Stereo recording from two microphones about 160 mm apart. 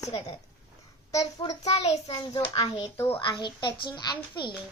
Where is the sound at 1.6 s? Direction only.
40° left (ahead or behind).